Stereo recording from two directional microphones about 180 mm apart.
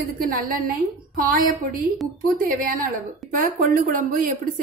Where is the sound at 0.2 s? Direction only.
55° right (ahead or behind).